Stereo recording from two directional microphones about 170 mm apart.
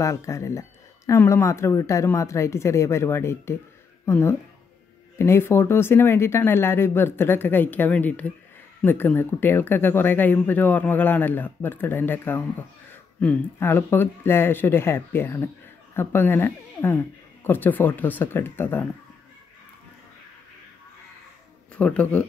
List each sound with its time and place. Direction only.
0.0 s speech: 15° left (ahead or behind)
21.7 s speech: 5° left (ahead or behind)